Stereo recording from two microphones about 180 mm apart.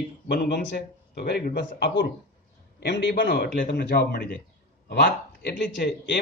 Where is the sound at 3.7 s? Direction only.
65° left (ahead or behind).